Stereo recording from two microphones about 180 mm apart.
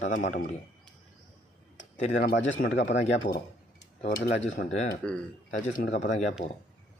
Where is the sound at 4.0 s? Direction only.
75° left (ahead or behind).